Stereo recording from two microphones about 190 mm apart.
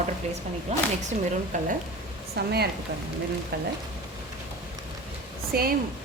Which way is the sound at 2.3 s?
55° right (ahead or behind).